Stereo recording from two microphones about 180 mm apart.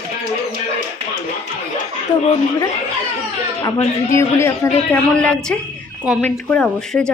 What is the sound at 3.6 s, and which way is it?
Speech, 15° left (ahead or behind).